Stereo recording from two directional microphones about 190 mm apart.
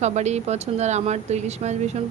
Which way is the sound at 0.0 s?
35° right (ahead or behind).